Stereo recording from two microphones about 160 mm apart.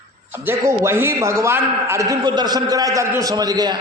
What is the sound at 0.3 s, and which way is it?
A man's voice, 15° right (ahead or behind).